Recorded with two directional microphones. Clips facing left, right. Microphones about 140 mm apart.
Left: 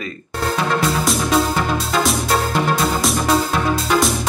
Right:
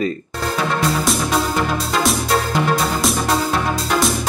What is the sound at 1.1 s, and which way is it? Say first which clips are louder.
Music: left 1 dB; centre (ahead or behind).